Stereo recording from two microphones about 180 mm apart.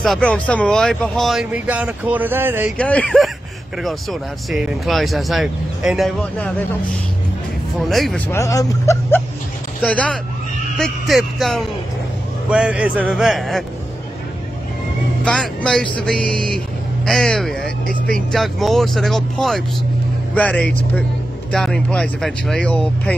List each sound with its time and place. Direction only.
0.0 s speech: 5° left (ahead or behind)
2.8 s speech: 5° left (ahead or behind)
7.8 s speech: centre (ahead or behind)
8.3 s speech: 15° left (ahead or behind)
9.8 s speech: 5° left (ahead or behind)
15.2 s speech: 5° left (ahead or behind)